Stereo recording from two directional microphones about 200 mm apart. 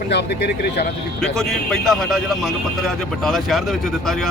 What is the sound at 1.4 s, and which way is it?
A man's voice, centre (ahead or behind).